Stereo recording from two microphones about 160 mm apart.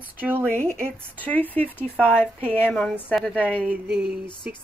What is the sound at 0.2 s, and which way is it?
Speech, 10° right (ahead or behind).